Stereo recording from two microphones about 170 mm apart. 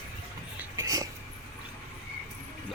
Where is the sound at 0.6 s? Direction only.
20° right (ahead or behind).